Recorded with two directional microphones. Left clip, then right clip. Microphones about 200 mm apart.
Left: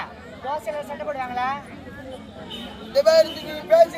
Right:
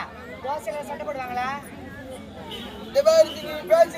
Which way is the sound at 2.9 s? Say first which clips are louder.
Left 1 dB; 5° left (ahead or behind).